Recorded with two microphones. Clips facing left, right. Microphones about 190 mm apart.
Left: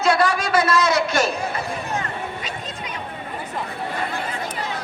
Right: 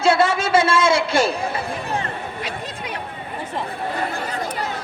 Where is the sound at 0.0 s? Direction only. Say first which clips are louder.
Right 2 dB; 25° right (ahead or behind).